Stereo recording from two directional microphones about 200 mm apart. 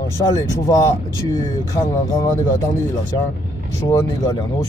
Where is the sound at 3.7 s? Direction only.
15° left (ahead or behind).